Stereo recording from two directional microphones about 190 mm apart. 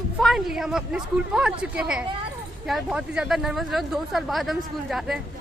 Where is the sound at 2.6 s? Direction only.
Centre (ahead or behind).